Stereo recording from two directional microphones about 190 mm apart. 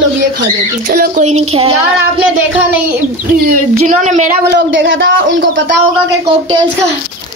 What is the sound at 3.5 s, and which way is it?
Speech, 40° right (ahead or behind).